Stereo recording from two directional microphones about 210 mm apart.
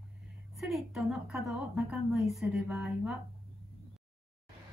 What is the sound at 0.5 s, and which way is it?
A woman's voice, centre (ahead or behind).